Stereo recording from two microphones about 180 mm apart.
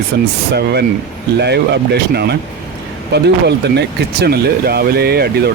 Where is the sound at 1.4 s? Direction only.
70° right (ahead or behind).